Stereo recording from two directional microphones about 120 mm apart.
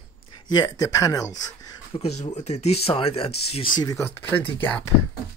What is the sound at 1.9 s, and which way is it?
Speech, 60° left (ahead or behind).